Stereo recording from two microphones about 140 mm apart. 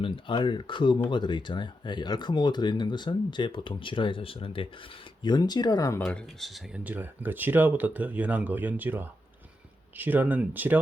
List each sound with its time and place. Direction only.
0.0 s speech: 35° left (ahead or behind)
6.1 s speech: 5° left (ahead or behind)
6.8 s speech: 15° right (ahead or behind)